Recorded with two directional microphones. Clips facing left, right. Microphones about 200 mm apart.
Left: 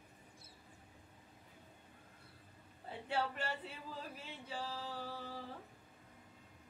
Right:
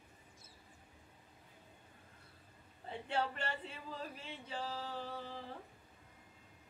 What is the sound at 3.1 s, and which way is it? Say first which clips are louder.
Speech: right 1 dB; 5° left (ahead or behind).